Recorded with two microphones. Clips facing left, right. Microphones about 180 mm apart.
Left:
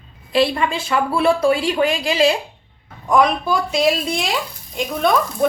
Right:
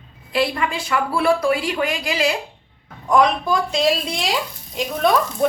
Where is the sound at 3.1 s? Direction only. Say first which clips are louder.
Even; 5° left (ahead or behind).